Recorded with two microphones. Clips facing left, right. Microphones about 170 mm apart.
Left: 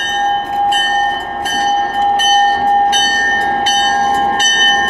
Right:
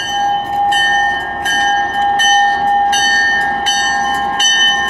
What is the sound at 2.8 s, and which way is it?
Train, 15° left (ahead or behind).